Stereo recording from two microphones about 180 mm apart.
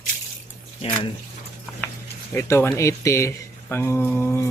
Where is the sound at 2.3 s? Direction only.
15° left (ahead or behind).